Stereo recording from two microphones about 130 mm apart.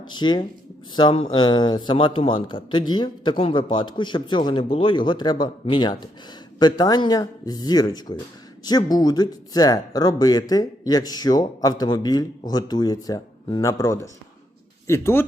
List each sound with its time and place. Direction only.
0.1 s speech: 35° left (ahead or behind)